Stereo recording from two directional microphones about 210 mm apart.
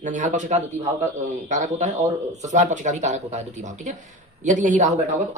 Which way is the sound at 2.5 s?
35° right (ahead or behind).